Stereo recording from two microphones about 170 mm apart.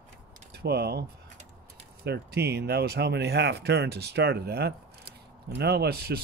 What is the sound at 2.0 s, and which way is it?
Speech, 75° right (ahead or behind).